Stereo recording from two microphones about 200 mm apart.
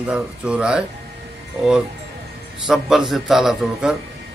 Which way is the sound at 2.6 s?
Centre (ahead or behind).